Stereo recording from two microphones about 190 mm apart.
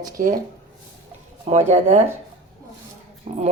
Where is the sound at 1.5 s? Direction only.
35° right (ahead or behind).